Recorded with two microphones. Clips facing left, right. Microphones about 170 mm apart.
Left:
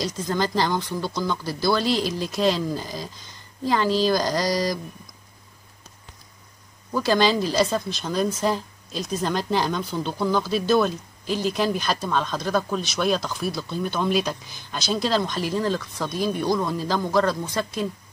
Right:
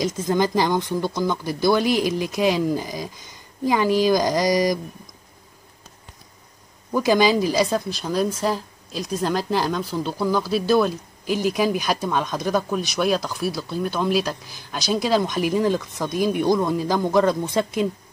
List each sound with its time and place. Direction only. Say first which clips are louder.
0.0 s speech: right 4 dB; 15° right (ahead or behind)
6.9 s speech: right 3 dB; 15° right (ahead or behind)
12.6 s speech: right 2 dB; 5° right (ahead or behind)